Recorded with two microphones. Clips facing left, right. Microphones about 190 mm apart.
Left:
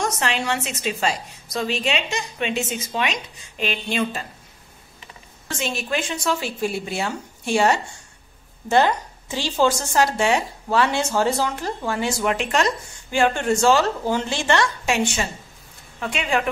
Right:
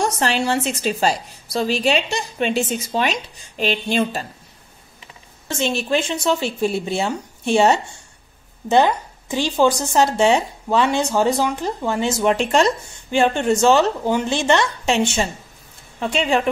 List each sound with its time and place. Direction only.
0.0 s a woman's voice: 35° right (ahead or behind)
5.5 s a woman's voice: 25° right (ahead or behind)